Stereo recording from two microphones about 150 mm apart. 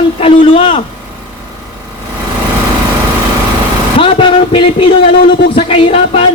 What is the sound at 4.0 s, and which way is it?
A man's voice, 35° left (ahead or behind).